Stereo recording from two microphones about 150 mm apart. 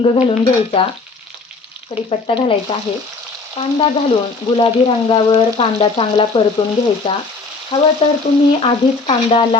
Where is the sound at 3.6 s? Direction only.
40° left (ahead or behind).